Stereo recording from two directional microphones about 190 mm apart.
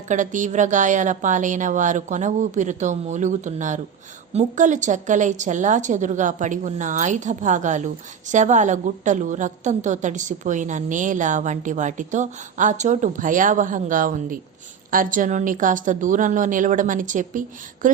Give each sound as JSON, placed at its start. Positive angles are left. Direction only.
{"t": 0.1, "sound": "a woman's voice", "side_deg": -40}